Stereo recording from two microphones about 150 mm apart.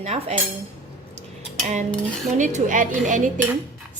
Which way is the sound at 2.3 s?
55° right (ahead or behind).